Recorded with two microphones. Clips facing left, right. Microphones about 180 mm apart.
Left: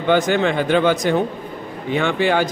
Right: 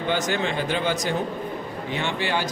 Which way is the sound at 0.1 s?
60° left (ahead or behind).